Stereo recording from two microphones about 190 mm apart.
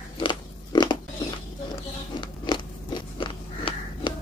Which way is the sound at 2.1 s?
25° left (ahead or behind).